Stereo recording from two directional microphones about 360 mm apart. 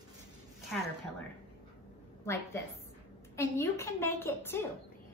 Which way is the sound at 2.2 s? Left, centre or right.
Centre.